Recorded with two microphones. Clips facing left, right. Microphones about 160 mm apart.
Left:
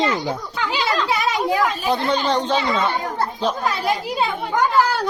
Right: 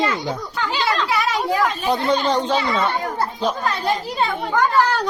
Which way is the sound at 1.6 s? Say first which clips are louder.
Even; centre (ahead or behind).